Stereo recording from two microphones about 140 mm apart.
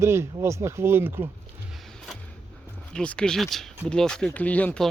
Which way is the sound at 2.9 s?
5° left (ahead or behind).